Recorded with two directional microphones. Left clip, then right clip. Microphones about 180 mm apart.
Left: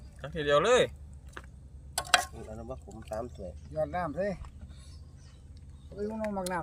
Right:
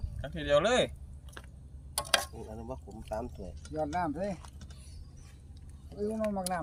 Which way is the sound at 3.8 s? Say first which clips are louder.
Left 1 dB; 50° left (ahead or behind).